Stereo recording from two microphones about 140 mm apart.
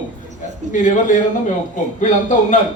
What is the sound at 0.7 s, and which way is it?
A man's voice, 65° left (ahead or behind).